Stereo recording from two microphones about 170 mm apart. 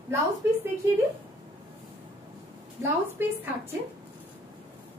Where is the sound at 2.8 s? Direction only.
15° right (ahead or behind).